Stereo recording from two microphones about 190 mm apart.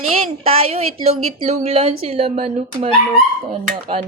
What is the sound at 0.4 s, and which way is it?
A woman's voice, 30° right (ahead or behind).